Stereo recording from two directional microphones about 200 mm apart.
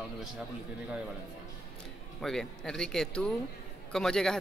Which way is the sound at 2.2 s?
5° left (ahead or behind).